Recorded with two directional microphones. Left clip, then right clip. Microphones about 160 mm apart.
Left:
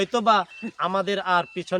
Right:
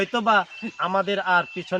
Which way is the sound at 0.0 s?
25° left (ahead or behind).